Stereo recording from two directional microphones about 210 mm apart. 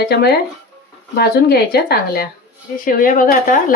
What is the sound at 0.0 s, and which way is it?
Speech, 50° left (ahead or behind).